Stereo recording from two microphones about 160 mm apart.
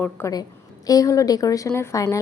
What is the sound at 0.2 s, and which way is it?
A woman's voice, 15° left (ahead or behind).